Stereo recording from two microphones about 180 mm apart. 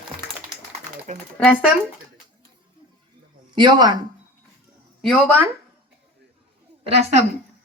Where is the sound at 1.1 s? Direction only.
40° right (ahead or behind).